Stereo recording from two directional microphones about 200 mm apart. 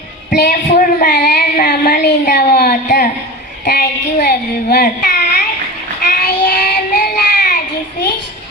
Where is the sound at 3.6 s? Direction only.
50° left (ahead or behind).